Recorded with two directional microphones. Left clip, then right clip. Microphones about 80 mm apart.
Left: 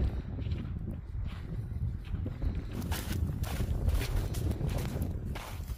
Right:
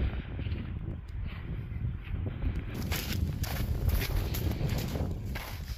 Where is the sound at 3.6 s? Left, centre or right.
Centre.